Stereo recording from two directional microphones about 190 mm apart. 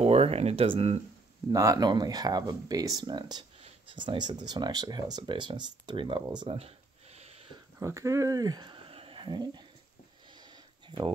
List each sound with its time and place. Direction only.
0.0 s speech: 30° right (ahead or behind)
1.5 s speech: 20° right (ahead or behind)
7.2 s a sound: 35° right (ahead or behind)
7.8 s speech: 15° right (ahead or behind)
10.9 s speech: 25° right (ahead or behind)